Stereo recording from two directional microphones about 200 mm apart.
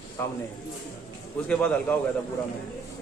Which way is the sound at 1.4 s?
5° left (ahead or behind).